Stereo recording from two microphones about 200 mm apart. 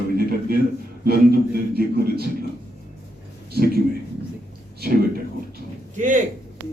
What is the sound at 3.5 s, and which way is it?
A man's voice, 50° right (ahead or behind).